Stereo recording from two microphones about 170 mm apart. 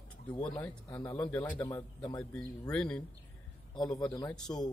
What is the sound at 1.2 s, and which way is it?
A man's voice, 5° left (ahead or behind).